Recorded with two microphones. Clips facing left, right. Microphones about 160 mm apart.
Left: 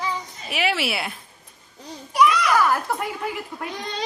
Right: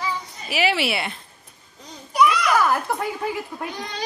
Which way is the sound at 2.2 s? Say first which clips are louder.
Even; 15° right (ahead or behind).